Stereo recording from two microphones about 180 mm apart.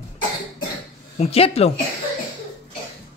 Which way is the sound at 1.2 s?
35° left (ahead or behind).